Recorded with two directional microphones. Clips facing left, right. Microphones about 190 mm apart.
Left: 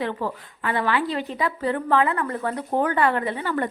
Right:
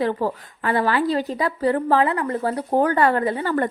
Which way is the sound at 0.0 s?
40° right (ahead or behind).